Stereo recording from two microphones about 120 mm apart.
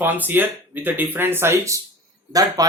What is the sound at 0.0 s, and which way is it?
Speech, 15° right (ahead or behind).